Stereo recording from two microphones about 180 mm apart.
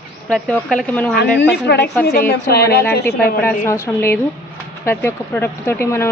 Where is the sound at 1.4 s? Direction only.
70° left (ahead or behind).